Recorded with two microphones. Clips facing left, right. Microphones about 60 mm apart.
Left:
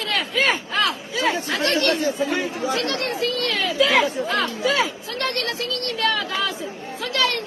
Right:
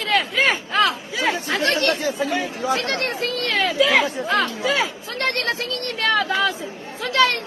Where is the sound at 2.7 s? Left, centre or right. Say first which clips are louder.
Right 4 dB; right.